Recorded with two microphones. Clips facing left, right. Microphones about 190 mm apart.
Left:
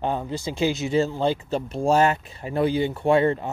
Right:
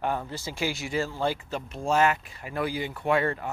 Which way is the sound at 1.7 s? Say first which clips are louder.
Left 4 dB; 35° left (ahead or behind).